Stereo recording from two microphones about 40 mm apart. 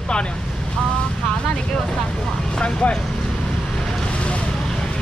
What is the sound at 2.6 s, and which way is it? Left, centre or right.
Speech, left.